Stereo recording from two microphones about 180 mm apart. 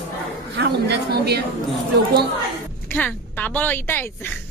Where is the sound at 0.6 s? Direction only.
65° right (ahead or behind).